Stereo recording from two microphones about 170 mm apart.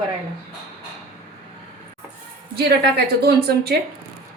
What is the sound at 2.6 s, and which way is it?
A woman's voice, 70° right (ahead or behind).